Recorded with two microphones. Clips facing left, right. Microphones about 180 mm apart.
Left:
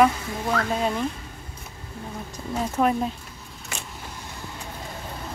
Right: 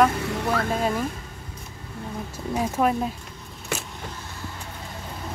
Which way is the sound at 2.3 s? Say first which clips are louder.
Even; 10° right (ahead or behind).